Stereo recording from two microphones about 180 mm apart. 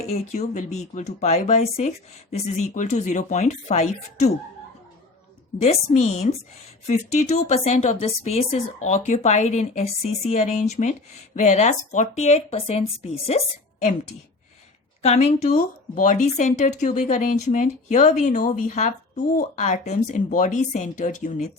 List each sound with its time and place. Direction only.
0.0 s speech: 35° left (ahead or behind)
5.7 s speech: 40° left (ahead or behind)
15.0 s speech: 35° left (ahead or behind)